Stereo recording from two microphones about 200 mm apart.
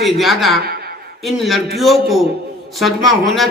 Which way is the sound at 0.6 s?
50° right (ahead or behind).